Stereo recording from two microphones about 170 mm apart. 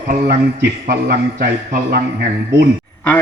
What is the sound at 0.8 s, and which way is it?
A man's voice, 65° right (ahead or behind).